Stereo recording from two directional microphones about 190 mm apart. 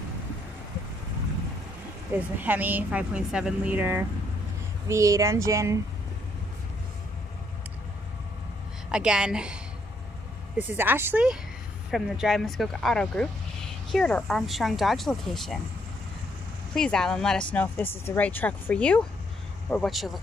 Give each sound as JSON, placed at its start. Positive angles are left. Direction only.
{"t": 2.1, "sound": "a woman's voice", "side_deg": -10}
{"t": 8.9, "sound": "speech", "side_deg": -5}
{"t": 10.7, "sound": "a woman's voice", "side_deg": -10}
{"t": 16.7, "sound": "speech", "side_deg": 5}